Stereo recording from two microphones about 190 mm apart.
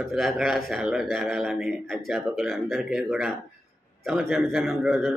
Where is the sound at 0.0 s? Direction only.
Centre (ahead or behind).